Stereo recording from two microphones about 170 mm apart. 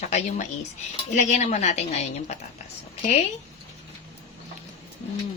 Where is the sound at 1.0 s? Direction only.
45° left (ahead or behind).